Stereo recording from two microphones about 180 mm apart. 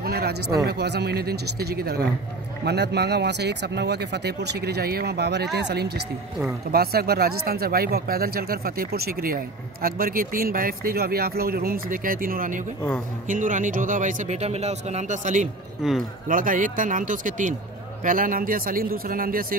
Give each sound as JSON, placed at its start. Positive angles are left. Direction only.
{"t": 0.0, "sound": "speech", "side_deg": -60}
{"t": 15.8, "sound": "speech", "side_deg": 0}
{"t": 16.3, "sound": "speech", "side_deg": -50}